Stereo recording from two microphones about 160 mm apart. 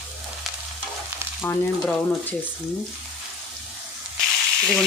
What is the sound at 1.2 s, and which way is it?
Frying, 15° right (ahead or behind).